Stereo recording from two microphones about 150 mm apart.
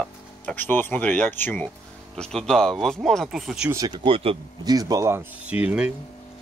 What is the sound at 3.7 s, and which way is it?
Speech, 25° right (ahead or behind).